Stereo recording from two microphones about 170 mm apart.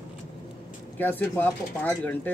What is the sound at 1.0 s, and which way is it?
Speech, 10° left (ahead or behind).